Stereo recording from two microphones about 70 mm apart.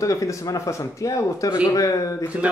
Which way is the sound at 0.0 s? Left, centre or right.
Left.